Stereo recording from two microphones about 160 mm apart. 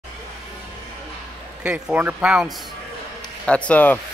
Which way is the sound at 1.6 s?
10° right (ahead or behind).